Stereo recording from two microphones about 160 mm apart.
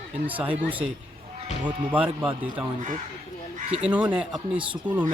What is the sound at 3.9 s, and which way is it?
Speech, 10° right (ahead or behind).